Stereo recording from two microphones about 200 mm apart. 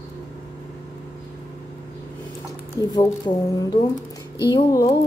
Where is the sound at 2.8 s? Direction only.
15° left (ahead or behind).